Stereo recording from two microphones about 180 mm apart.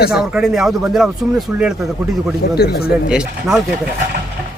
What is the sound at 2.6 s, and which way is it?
Speech, 60° left (ahead or behind).